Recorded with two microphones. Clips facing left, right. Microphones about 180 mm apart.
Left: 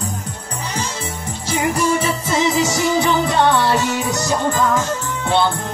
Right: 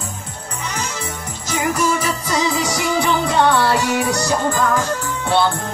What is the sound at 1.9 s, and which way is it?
Music, 30° left (ahead or behind).